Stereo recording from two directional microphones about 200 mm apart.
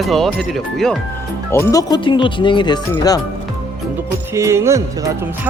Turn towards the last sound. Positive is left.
turn(degrees=-15)  # may be behind; listen again after turning